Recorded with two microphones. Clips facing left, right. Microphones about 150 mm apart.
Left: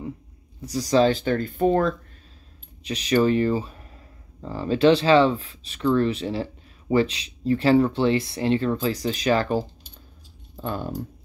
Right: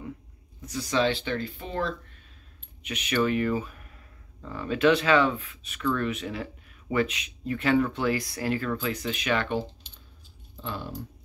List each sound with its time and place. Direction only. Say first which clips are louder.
0.6 s speech: left 7 dB; 35° left (ahead or behind)
2.8 s speech: left 6 dB; 35° left (ahead or behind)